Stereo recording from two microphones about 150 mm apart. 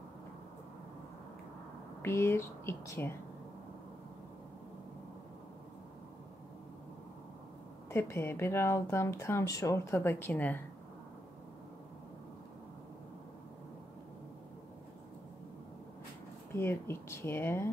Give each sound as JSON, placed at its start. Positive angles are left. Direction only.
{"t": 2.0, "sound": "speech", "side_deg": 15}
{"t": 7.9, "sound": "speech", "side_deg": 15}
{"t": 16.5, "sound": "speech", "side_deg": 15}